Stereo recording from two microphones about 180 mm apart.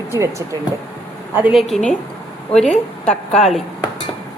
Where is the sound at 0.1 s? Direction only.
15° right (ahead or behind).